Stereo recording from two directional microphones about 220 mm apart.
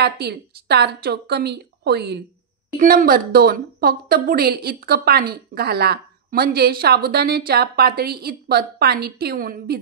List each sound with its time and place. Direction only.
0.0 s a woman's voice: 50° right (ahead or behind)